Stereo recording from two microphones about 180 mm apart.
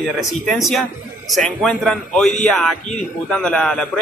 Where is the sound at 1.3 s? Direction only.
Centre (ahead or behind).